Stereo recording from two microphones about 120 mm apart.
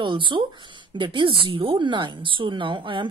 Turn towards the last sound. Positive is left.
turn(degrees=-45)  # may be behind; listen again after turning